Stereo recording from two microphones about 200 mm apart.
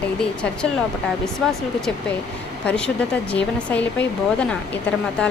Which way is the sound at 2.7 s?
5° left (ahead or behind).